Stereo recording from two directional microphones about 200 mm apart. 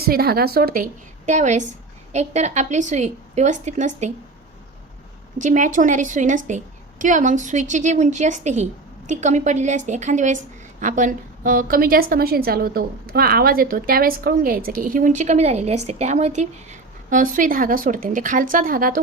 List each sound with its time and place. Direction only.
0.0 s a woman's voice: 50° right (ahead or behind)
5.4 s a woman's voice: 40° right (ahead or behind)